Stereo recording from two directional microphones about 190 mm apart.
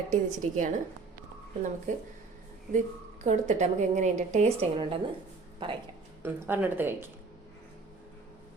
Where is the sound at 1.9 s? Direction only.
40° right (ahead or behind).